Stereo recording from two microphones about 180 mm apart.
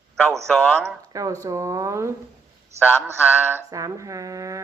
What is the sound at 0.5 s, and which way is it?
Speech, 5° left (ahead or behind).